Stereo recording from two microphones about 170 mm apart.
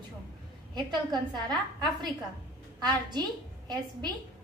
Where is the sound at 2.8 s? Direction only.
25° right (ahead or behind).